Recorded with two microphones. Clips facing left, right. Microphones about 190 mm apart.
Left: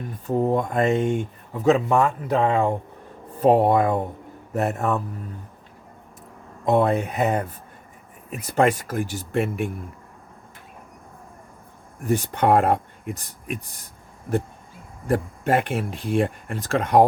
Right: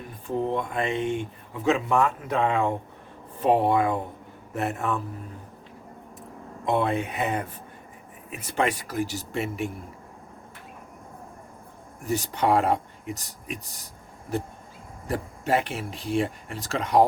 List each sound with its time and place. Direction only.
0.3 s speech: 45° left (ahead or behind)
6.7 s speech: 40° left (ahead or behind)
12.0 s speech: 55° left (ahead or behind)
15.0 s speech: 55° left (ahead or behind)